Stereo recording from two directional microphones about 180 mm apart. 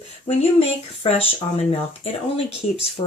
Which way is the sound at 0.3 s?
35° left (ahead or behind).